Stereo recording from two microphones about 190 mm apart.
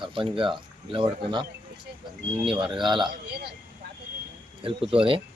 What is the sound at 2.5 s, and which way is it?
Speech, 25° right (ahead or behind).